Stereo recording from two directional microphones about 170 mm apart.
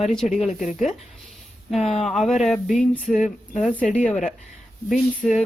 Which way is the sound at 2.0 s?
Centre (ahead or behind).